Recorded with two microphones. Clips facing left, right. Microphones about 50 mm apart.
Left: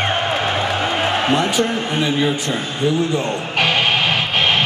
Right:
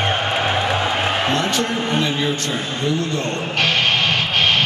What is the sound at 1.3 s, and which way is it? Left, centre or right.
A man's voice, centre.